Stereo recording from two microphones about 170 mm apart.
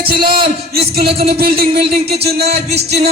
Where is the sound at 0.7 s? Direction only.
65° right (ahead or behind).